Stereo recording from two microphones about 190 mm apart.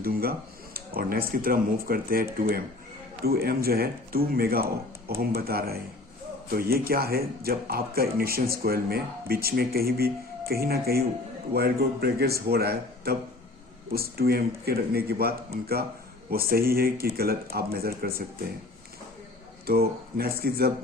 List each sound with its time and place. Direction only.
0.0 s speech: 55° right (ahead or behind)
3.2 s a man's voice: 55° right (ahead or behind)
19.6 s speech: 55° right (ahead or behind)